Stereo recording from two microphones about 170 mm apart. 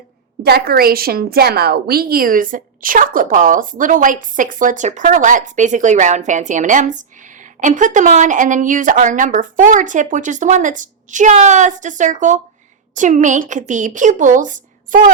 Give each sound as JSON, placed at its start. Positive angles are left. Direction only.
{"t": 0.4, "sound": "a woman's voice", "side_deg": -65}